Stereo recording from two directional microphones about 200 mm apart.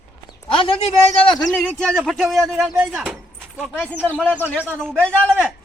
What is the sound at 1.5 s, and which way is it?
Speech, centre (ahead or behind).